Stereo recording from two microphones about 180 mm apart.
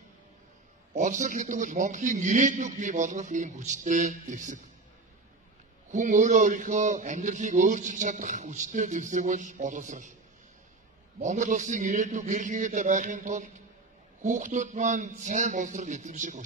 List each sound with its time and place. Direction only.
0.9 s a man's voice: 45° right (ahead or behind)
5.9 s a man's voice: 45° right (ahead or behind)
11.1 s a man's voice: 45° right (ahead or behind)